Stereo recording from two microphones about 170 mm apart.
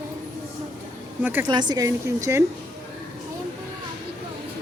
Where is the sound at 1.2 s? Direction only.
10° right (ahead or behind).